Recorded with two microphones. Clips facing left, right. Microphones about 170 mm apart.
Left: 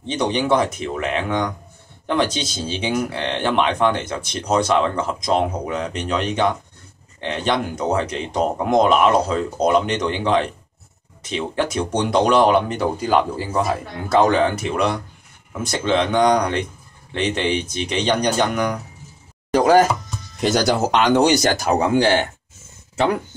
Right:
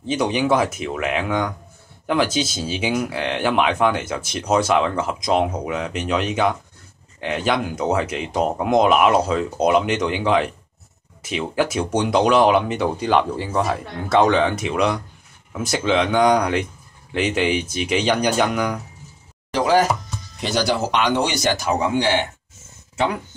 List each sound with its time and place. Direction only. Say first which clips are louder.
0.0 s speech: right 1 dB; 5° right (ahead or behind)
19.5 s a sound: left 4 dB; 50° left (ahead or behind)
20.3 s speech: left 3 dB; 45° left (ahead or behind)